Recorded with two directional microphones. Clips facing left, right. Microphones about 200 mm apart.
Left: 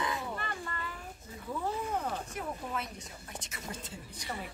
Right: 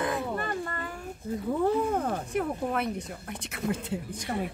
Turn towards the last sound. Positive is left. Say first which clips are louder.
# right 9 dB
turn(degrees=-50)  # may be behind; listen again after turning